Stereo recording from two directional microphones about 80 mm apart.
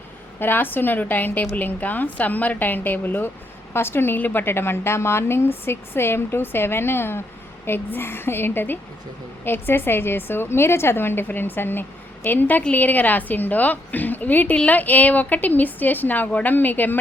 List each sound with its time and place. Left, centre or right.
0.3 s a woman's voice: left